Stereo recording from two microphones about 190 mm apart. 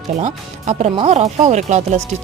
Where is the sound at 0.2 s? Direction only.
35° right (ahead or behind).